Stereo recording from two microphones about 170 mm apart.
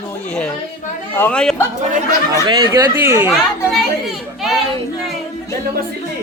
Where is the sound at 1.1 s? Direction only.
10° left (ahead or behind).